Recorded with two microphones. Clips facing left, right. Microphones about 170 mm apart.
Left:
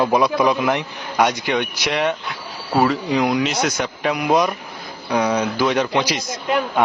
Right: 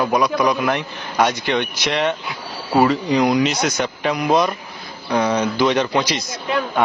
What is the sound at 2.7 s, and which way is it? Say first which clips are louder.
Speech: right 2 dB; 10° right (ahead or behind).